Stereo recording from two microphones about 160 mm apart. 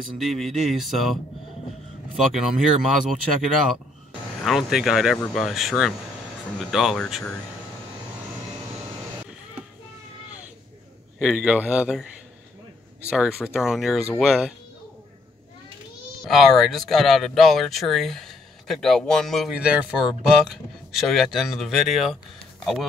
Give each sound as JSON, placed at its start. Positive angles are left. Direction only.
{"t": 0.2, "sound": "speech", "side_deg": 0}
{"t": 2.1, "sound": "speech", "side_deg": -5}
{"t": 4.4, "sound": "speech", "side_deg": 0}
{"t": 11.1, "sound": "speech", "side_deg": -5}
{"t": 16.3, "sound": "speech", "side_deg": 0}